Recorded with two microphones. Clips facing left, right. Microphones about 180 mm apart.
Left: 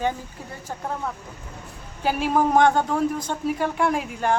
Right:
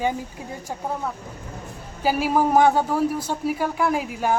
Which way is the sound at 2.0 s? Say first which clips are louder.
Right 1 dB; 5° right (ahead or behind).